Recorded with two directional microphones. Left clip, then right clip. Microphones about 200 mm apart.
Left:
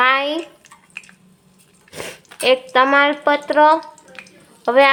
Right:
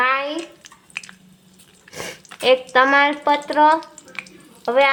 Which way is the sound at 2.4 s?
5° left (ahead or behind).